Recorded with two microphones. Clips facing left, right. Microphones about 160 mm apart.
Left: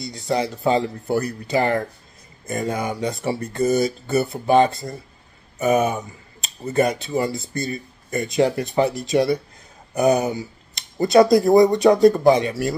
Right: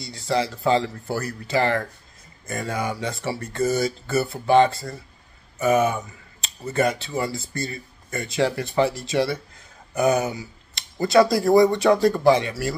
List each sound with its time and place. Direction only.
0.1 s speech: 20° left (ahead or behind)
6.6 s speech: 30° left (ahead or behind)
7.1 s speech: 20° left (ahead or behind)